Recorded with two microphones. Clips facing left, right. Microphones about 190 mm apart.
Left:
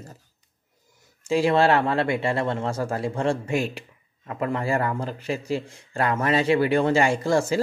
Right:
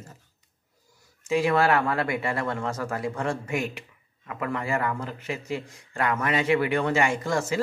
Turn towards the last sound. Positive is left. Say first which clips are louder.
# left 5 dB
turn(degrees=30)  # may be behind; listen again after turning